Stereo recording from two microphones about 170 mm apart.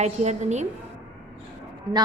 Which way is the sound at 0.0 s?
40° right (ahead or behind).